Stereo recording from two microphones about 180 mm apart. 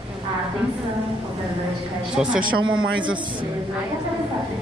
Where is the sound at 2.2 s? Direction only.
5° right (ahead or behind).